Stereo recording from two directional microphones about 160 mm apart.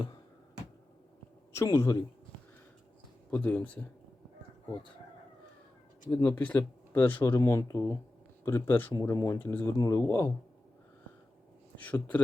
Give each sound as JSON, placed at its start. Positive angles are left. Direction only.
{"t": 1.5, "sound": "speech", "side_deg": 20}
{"t": 3.2, "sound": "speech", "side_deg": 10}
{"t": 6.1, "sound": "speech", "side_deg": 10}
{"t": 11.8, "sound": "speech", "side_deg": 10}